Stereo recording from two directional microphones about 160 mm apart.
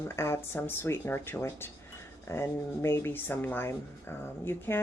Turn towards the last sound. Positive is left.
turn(degrees=15)  # may be behind; listen again after turning